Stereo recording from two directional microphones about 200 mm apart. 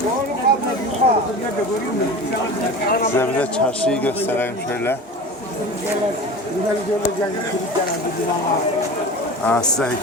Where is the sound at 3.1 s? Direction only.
10° left (ahead or behind).